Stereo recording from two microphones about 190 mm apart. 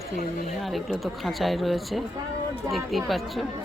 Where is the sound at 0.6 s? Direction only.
Centre (ahead or behind).